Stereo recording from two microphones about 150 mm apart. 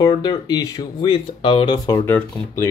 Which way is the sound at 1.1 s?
35° left (ahead or behind).